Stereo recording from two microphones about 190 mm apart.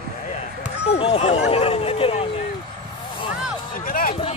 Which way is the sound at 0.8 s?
30° left (ahead or behind).